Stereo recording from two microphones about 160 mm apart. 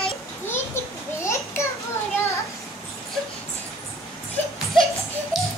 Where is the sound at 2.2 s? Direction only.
20° left (ahead or behind).